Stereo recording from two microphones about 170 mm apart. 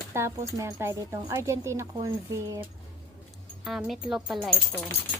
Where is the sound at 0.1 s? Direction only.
15° right (ahead or behind).